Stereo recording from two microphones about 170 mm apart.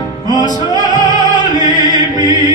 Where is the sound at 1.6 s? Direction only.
50° left (ahead or behind).